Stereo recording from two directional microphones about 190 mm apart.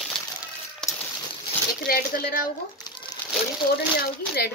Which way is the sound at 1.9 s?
50° left (ahead or behind).